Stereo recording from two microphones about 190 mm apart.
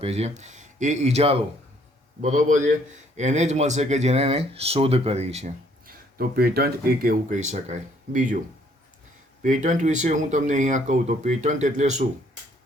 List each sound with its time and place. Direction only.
0.0 s speech: 35° right (ahead or behind)
9.4 s speech: 40° right (ahead or behind)